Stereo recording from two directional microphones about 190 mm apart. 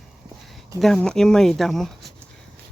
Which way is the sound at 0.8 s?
Centre (ahead or behind).